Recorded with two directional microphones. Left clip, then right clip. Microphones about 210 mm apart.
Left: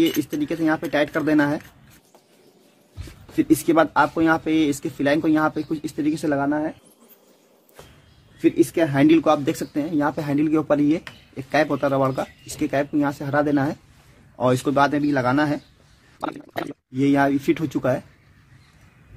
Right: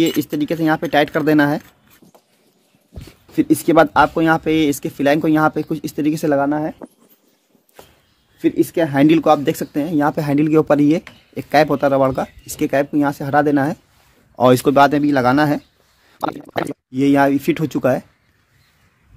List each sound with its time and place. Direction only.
0.2 s speech: 45° right (ahead or behind)
3.3 s speech: 40° right (ahead or behind)
8.4 s speech: 35° right (ahead or behind)